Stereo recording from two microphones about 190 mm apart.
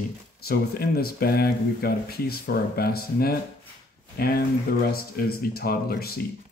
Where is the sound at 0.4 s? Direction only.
55° left (ahead or behind).